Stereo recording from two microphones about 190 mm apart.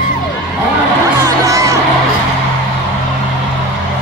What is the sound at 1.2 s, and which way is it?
Music, 15° right (ahead or behind).